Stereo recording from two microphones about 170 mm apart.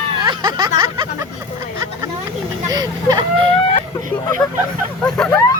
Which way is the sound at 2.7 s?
25° right (ahead or behind).